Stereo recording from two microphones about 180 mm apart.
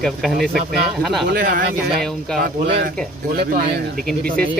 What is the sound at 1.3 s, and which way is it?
Speech, 50° right (ahead or behind).